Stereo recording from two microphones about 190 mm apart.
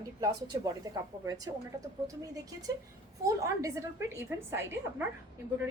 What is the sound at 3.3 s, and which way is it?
Speech, 15° right (ahead or behind).